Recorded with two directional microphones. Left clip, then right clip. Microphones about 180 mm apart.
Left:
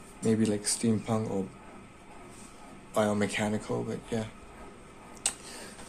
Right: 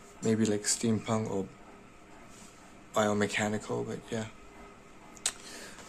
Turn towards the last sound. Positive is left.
turn(degrees=-20)  # may be behind; listen again after turning